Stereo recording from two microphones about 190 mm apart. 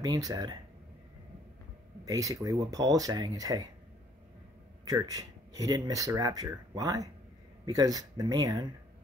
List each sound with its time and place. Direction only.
0.0 s speech: 20° right (ahead or behind)
2.0 s speech: 15° right (ahead or behind)
4.8 s speech: 20° right (ahead or behind)